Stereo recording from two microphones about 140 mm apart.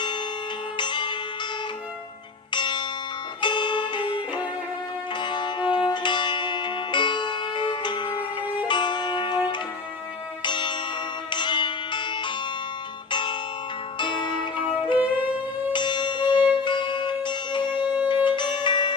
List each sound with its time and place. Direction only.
0.8 s music: 35° left (ahead or behind)
2.5 s church bell: 35° left (ahead or behind)
3.4 s music: 35° left (ahead or behind)
5.2 s music: 35° left (ahead or behind)
14.9 s music: 10° right (ahead or behind)
15.7 s music: 35° left (ahead or behind)
18.1 s bell: 35° left (ahead or behind)